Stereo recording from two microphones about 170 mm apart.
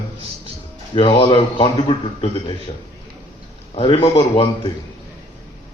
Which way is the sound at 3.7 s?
30° left (ahead or behind).